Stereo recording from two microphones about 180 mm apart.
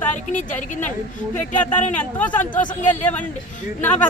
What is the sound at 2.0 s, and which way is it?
Speech, 10° left (ahead or behind).